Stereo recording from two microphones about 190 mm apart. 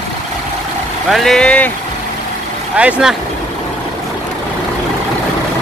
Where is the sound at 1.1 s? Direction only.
Centre (ahead or behind).